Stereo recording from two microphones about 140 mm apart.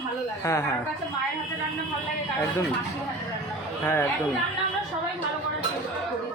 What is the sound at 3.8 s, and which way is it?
Speech, 15° left (ahead or behind).